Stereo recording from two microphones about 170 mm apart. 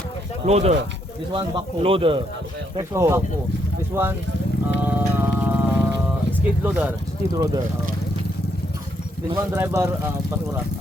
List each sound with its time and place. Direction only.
0.4 s a man's voice: 40° right (ahead or behind)
1.3 s a man's voice: 25° right (ahead or behind)
2.7 s speech: 15° right (ahead or behind)
4.8 s music: 10° right (ahead or behind)
6.7 s speech: 10° right (ahead or behind)
7.3 s speech: 20° right (ahead or behind)
9.6 s speech: 15° right (ahead or behind)